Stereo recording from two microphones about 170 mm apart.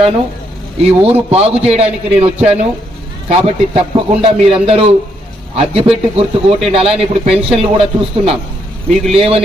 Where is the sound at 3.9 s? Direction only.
30° right (ahead or behind).